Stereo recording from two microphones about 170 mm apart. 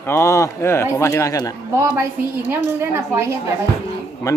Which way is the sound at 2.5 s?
15° right (ahead or behind).